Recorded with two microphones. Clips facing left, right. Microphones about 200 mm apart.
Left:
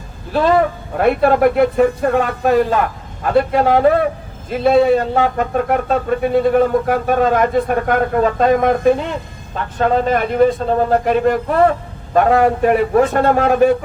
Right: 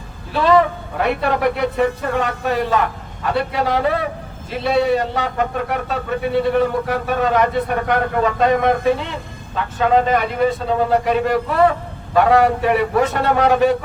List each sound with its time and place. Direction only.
0.3 s speech: 45° left (ahead or behind)